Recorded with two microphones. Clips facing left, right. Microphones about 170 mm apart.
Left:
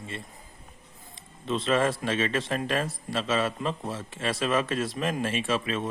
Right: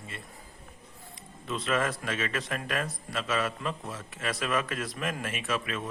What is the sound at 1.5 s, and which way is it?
Speech, 25° left (ahead or behind).